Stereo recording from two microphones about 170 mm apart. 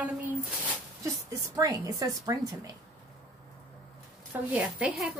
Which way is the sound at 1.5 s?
20° right (ahead or behind).